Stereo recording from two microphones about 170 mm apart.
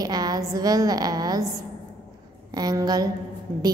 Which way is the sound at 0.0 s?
25° right (ahead or behind).